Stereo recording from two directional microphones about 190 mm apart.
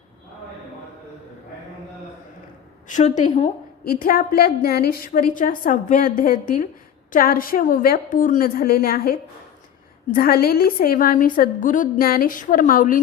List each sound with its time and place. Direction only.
2.8 s a woman's voice: 40° left (ahead or behind)
4.0 s a woman's voice: 50° left (ahead or behind)